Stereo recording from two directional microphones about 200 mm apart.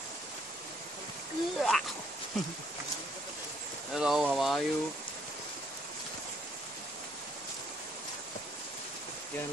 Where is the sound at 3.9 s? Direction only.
5° right (ahead or behind).